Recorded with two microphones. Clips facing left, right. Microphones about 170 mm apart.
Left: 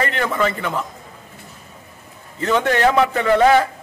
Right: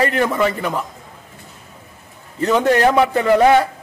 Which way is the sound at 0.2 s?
15° right (ahead or behind).